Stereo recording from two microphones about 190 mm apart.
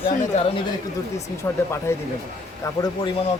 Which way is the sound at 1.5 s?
10° left (ahead or behind).